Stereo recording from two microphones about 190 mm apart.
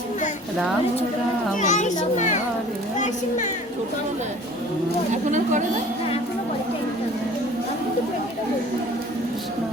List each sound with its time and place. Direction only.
1.5 s a child's voice: 40° left (ahead or behind)
5.1 s a woman's voice: 40° right (ahead or behind)